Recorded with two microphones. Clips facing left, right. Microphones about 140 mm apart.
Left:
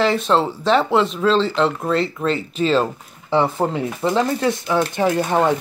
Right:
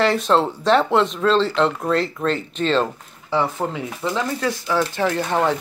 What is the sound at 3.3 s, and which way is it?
Speech, 25° left (ahead or behind).